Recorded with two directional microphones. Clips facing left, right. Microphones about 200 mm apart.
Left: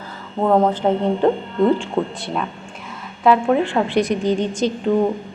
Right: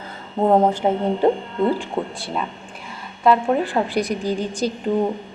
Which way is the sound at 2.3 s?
Centre (ahead or behind).